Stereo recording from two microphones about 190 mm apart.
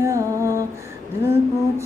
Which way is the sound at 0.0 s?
15° right (ahead or behind).